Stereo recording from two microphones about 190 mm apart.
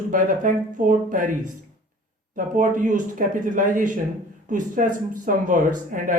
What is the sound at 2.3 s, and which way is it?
Speech, 45° right (ahead or behind).